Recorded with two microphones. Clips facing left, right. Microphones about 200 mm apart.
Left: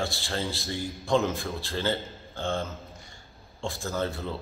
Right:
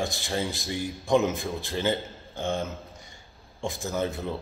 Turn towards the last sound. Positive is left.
turn(degrees=-15)  # may be behind; listen again after turning